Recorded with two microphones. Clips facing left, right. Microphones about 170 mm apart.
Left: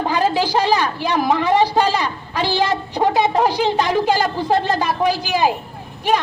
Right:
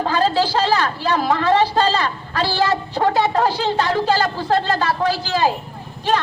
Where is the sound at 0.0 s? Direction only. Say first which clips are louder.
Even; 15° left (ahead or behind).